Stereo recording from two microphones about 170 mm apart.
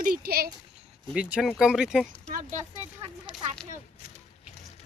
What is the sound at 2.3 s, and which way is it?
Speech, 45° right (ahead or behind).